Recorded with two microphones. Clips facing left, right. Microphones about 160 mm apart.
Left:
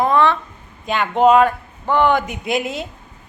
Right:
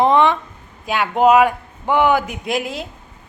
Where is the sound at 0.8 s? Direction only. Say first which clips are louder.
Even; 5° right (ahead or behind).